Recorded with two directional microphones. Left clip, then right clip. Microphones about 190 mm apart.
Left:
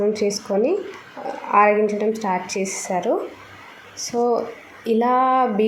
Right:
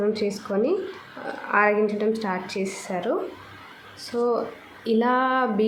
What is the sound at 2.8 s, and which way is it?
Speech, 15° left (ahead or behind).